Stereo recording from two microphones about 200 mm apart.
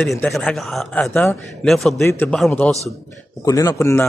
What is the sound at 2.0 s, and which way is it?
Speech, 10° left (ahead or behind).